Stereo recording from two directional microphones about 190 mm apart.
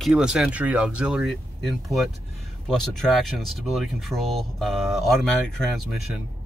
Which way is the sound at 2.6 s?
Centre (ahead or behind).